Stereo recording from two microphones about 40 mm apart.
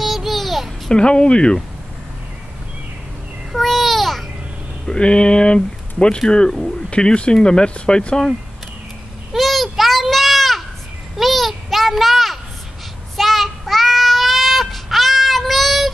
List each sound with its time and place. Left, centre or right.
0.0 s a sound: centre
0.9 s speech: left
3.5 s babbling: centre
4.8 s speech: left
9.3 s children playing: centre
11.1 s a sound: centre
13.1 s child singing: centre